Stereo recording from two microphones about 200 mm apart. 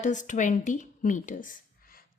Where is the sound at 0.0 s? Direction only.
40° left (ahead or behind).